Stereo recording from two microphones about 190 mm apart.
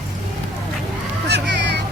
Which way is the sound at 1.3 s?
65° right (ahead or behind).